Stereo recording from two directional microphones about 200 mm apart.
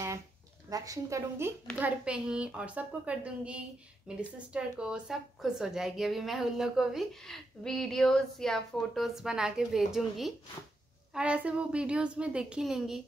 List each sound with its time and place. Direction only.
0.7 s a woman's voice: 15° right (ahead or behind); by 13.0 s centre (ahead or behind)